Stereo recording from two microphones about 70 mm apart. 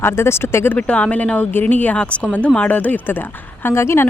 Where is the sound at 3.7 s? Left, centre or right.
Left.